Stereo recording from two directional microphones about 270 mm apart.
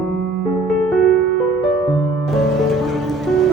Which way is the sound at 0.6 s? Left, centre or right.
Centre.